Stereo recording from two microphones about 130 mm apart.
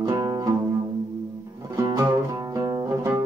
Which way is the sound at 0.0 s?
30° right (ahead or behind).